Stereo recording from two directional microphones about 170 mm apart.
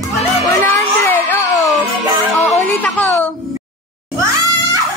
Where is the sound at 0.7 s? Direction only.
15° left (ahead or behind).